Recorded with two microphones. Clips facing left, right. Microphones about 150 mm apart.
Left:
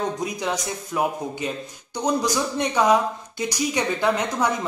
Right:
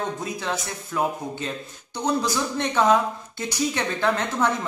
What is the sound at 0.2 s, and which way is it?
A man's voice, 15° left (ahead or behind).